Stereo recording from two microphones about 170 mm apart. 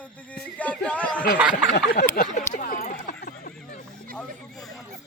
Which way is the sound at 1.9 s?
60° left (ahead or behind).